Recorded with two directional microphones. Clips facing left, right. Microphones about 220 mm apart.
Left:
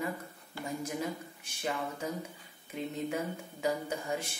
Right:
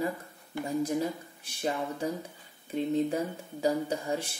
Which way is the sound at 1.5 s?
35° right (ahead or behind).